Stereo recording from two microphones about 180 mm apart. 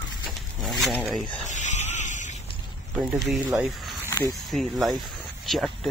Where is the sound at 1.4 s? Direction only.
40° left (ahead or behind).